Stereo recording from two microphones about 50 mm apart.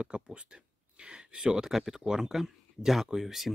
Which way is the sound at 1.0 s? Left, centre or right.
Centre.